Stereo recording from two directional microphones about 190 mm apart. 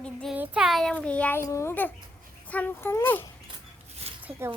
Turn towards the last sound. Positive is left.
turn(degrees=-10)  # may be behind; listen again after turning